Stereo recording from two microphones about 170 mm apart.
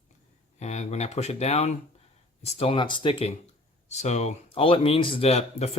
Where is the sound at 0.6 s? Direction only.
40° left (ahead or behind).